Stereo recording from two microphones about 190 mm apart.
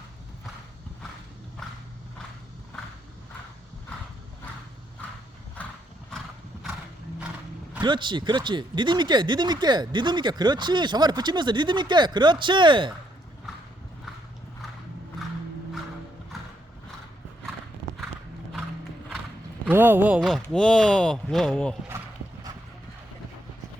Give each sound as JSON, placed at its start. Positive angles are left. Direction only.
{"t": 7.8, "sound": "speech", "side_deg": -25}
{"t": 19.6, "sound": "speech", "side_deg": -10}